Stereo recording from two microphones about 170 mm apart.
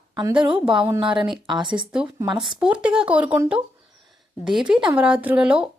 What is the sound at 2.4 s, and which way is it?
A woman's voice, centre (ahead or behind).